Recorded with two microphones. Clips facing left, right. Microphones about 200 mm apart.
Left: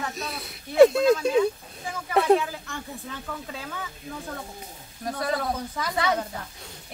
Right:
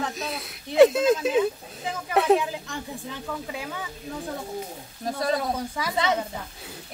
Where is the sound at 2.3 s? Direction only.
15° right (ahead or behind).